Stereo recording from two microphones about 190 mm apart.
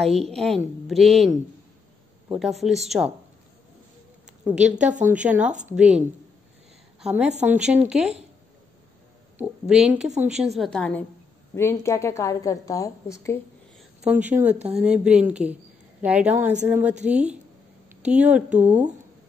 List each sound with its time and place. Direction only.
0.3 s a woman's voice: centre (ahead or behind)
2.3 s a woman's voice: centre (ahead or behind)
4.6 s a woman's voice: 40° right (ahead or behind)
5.1 s a woman's voice: 5° right (ahead or behind)
9.4 s a woman's voice: 5° right (ahead or behind); by 13.4 s 15° left (ahead or behind)
14.0 s speech: 10° right (ahead or behind)
14.5 s a woman's voice: 35° right (ahead or behind)
14.8 s a woman's voice: 5° right (ahead or behind)